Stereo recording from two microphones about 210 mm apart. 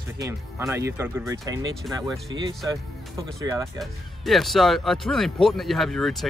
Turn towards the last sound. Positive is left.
turn(degrees=0)  # may be behind; listen again after turning